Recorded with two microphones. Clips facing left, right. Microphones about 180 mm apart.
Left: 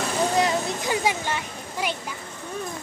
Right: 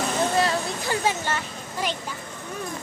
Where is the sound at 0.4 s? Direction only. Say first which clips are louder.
Left 1 dB; 20° left (ahead or behind).